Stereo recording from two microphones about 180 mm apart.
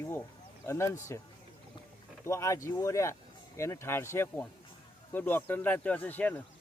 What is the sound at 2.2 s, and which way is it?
Speech, 15° left (ahead or behind).